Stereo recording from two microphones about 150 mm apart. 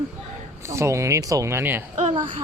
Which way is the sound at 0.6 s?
20° right (ahead or behind).